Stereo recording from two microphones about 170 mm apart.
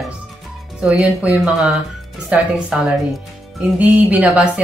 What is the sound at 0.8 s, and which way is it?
Speech, 5° right (ahead or behind).